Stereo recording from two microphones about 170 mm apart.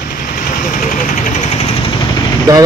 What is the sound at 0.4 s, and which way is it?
Vehicle, 50° left (ahead or behind).